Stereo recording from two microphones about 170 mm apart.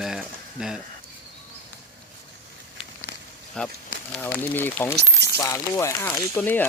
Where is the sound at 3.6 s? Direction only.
5° left (ahead or behind).